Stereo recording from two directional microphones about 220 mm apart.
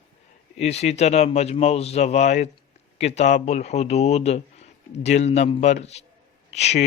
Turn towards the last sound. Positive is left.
turn(degrees=30)  # may be behind; listen again after turning